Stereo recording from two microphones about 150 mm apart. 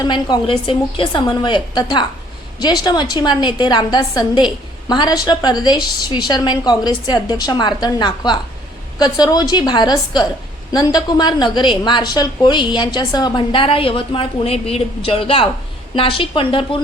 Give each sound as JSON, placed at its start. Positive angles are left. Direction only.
{"t": 0.0, "sound": "a woman's voice", "side_deg": 30}